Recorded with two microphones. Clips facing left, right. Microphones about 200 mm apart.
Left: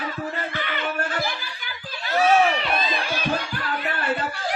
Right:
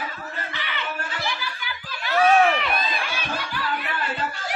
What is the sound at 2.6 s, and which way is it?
Run, 30° left (ahead or behind).